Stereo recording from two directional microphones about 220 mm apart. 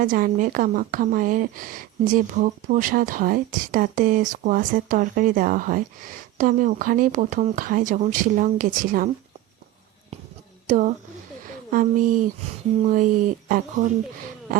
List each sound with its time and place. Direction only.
0.0 s a woman's voice: 40° right (ahead or behind)
10.7 s a woman's voice: 35° right (ahead or behind)